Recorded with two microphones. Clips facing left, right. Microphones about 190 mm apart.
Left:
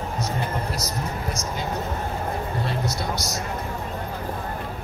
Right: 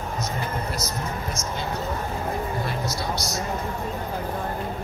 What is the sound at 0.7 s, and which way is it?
Speech, 35° left (ahead or behind).